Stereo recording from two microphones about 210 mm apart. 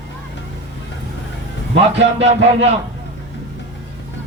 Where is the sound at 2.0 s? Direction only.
60° right (ahead or behind).